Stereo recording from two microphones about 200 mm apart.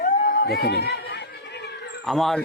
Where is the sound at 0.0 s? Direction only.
45° left (ahead or behind).